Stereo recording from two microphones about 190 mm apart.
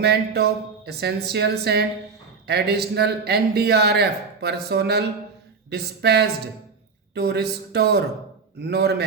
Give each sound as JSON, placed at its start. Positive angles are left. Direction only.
{"t": 0.0, "sound": "a man's voice", "side_deg": -60}